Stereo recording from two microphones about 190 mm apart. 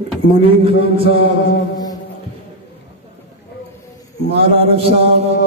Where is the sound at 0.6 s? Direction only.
30° right (ahead or behind).